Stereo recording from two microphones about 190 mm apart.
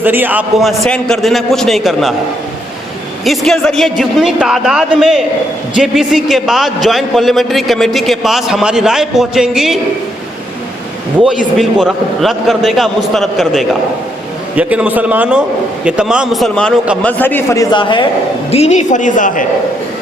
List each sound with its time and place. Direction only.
0.0 s a man's voice: 10° right (ahead or behind)
3.2 s a man's voice: centre (ahead or behind)
11.3 s a man's voice: centre (ahead or behind); by 18.0 s 25° left (ahead or behind)
18.5 s a woman's voice: 35° left (ahead or behind)